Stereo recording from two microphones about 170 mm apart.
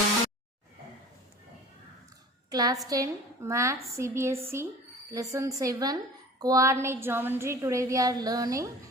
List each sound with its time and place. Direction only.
2.5 s a woman's voice: 20° right (ahead or behind)